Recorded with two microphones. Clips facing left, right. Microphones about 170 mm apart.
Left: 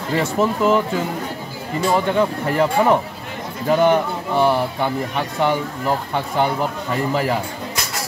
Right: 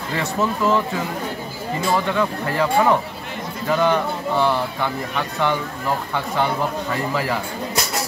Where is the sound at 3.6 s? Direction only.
25° left (ahead or behind).